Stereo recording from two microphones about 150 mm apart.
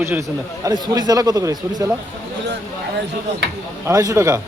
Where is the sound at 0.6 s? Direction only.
25° right (ahead or behind).